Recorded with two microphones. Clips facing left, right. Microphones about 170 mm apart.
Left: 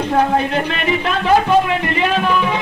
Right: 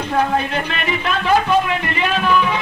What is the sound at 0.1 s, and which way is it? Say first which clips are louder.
Music: left 2 dB; 30° left (ahead or behind).